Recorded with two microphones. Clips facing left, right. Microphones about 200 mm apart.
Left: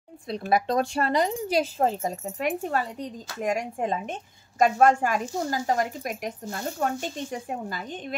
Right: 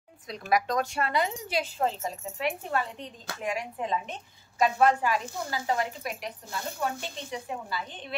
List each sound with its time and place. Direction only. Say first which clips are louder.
0.3 s a woman's voice: left 3 dB; 30° left (ahead or behind)